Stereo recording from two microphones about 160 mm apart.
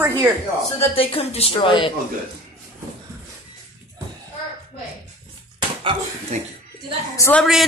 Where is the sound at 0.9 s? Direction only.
40° left (ahead or behind).